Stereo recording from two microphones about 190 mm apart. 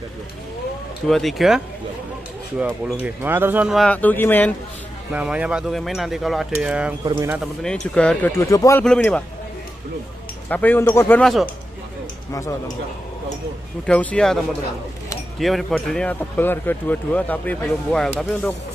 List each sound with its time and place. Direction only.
1.0 s speech: centre (ahead or behind)
2.6 s speech: 10° right (ahead or behind); by 4.5 s 10° left (ahead or behind)
5.1 s speech: 5° right (ahead or behind)
7.6 s speech: 5° left (ahead or behind)
8.8 s speech: 5° left (ahead or behind)
10.5 s speech: 10° left (ahead or behind)
12.3 s speech: 15° left (ahead or behind)
13.8 s speech: 5° left (ahead or behind)